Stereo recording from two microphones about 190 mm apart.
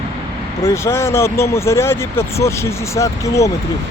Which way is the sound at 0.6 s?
15° left (ahead or behind).